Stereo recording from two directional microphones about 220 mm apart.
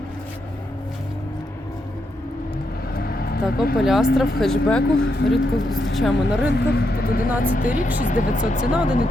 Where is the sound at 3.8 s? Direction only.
Centre (ahead or behind).